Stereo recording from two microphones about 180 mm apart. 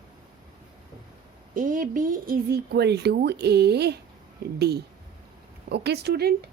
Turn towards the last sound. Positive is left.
turn(degrees=-65)  # may be behind; listen again after turning